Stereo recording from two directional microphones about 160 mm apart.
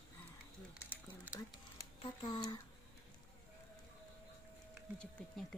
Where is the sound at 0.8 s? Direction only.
10° left (ahead or behind).